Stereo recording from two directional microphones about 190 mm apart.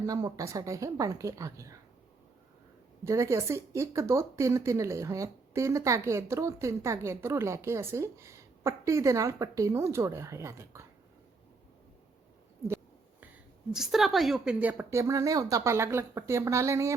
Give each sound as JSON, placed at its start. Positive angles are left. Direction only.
{"t": 0.0, "sound": "speech", "side_deg": -20}
{"t": 3.0, "sound": "speech", "side_deg": -15}
{"t": 13.7, "sound": "speech", "side_deg": 0}